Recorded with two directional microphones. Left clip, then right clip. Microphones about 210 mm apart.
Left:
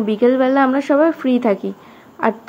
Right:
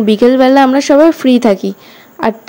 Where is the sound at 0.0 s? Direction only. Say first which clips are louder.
Right 7 dB; 50° right (ahead or behind).